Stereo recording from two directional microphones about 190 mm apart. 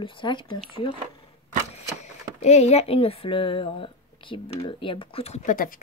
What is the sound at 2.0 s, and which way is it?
Speech, 35° left (ahead or behind).